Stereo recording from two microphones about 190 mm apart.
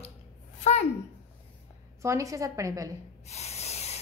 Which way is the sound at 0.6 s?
35° left (ahead or behind).